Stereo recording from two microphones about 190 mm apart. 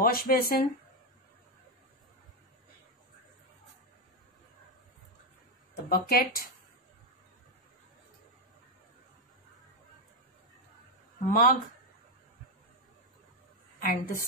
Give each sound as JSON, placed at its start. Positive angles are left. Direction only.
{"t": 0.0, "sound": "speech", "side_deg": 50}
{"t": 5.9, "sound": "speech", "side_deg": 50}
{"t": 11.2, "sound": "speech", "side_deg": 45}
{"t": 13.7, "sound": "a woman's voice", "side_deg": 45}